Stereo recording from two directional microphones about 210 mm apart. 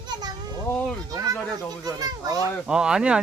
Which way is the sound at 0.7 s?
5° left (ahead or behind).